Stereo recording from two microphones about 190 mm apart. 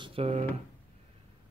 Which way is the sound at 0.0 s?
30° right (ahead or behind).